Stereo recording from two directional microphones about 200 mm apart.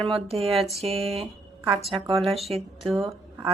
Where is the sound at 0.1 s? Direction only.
30° right (ahead or behind).